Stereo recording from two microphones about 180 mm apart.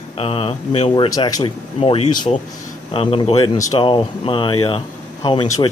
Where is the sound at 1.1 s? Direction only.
20° left (ahead or behind).